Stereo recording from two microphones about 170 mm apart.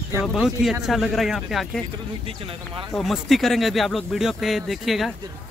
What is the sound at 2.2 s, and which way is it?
Speech, 30° right (ahead or behind).